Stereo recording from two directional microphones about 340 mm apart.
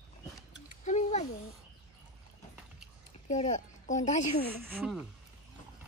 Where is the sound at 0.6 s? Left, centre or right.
Left.